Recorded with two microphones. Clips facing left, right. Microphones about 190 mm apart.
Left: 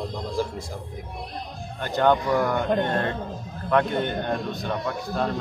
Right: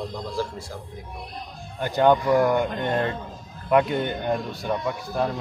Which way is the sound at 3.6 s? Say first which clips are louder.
Right 2 dB; 10° right (ahead or behind).